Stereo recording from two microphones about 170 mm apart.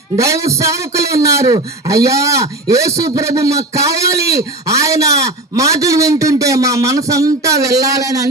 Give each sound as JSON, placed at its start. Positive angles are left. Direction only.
{"t": 0.2, "sound": "a man's voice", "side_deg": -20}